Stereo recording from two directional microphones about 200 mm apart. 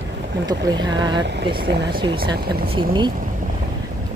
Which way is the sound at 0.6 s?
20° right (ahead or behind).